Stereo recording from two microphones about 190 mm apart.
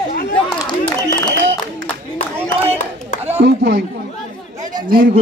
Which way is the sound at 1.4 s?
70° right (ahead or behind).